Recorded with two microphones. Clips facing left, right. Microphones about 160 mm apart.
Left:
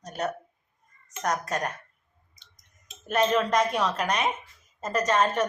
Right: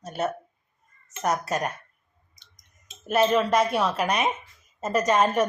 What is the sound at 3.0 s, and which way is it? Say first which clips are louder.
A woman's voice: right 2 dB; 5° right (ahead or behind).